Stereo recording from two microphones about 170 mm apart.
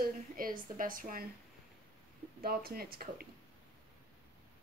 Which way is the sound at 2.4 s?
60° right (ahead or behind).